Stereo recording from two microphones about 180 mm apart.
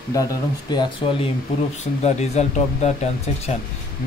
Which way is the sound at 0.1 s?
20° left (ahead or behind).